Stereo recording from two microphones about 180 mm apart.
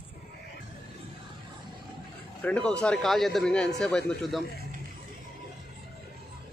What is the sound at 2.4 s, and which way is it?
A man's voice, 5° left (ahead or behind).